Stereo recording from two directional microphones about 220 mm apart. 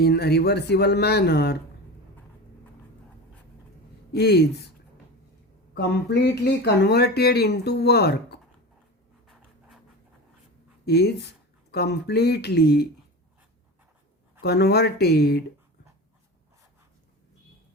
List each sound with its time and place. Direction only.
0.0 s speech: 45° left (ahead or behind)
4.1 s speech: 50° left (ahead or behind)
5.7 s speech: 50° left (ahead or behind)
9.2 s writing: centre (ahead or behind)
10.8 s speech: 50° left (ahead or behind)
14.4 s speech: 45° left (ahead or behind)